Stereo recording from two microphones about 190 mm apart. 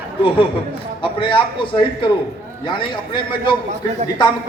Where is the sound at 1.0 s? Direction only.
25° left (ahead or behind).